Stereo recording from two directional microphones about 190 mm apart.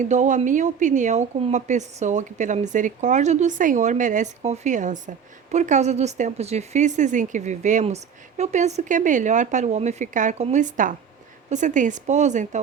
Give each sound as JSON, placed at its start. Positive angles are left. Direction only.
{"t": 0.0, "sound": "speech", "side_deg": -40}